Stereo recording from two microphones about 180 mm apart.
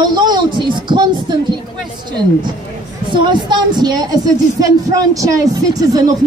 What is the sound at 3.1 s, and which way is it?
Speech, 25° right (ahead or behind).